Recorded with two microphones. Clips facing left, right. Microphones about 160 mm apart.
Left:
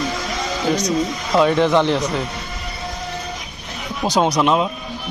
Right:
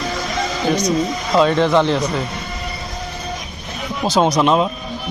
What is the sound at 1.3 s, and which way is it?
Speech, 15° left (ahead or behind).